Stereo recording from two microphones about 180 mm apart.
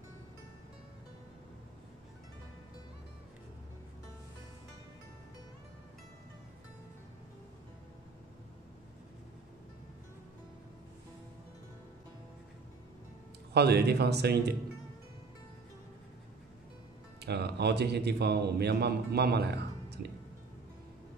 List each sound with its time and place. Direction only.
13.5 s speech: 65° right (ahead or behind)
17.2 s a man's voice: 65° right (ahead or behind)